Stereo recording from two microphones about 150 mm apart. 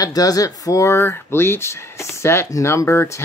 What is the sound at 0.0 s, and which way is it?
Speech, 25° left (ahead or behind).